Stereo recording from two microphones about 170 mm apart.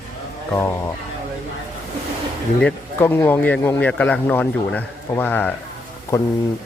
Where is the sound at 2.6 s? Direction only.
15° left (ahead or behind).